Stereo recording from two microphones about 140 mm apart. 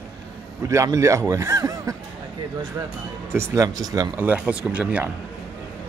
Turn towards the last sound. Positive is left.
turn(degrees=-10)  # may be behind; listen again after turning